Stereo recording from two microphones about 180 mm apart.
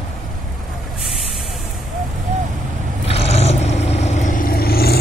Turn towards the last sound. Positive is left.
turn(degrees=60)  # may be behind; listen again after turning